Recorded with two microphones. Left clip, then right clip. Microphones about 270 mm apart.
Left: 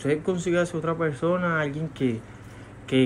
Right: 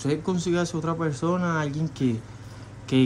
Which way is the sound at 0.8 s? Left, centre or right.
Centre.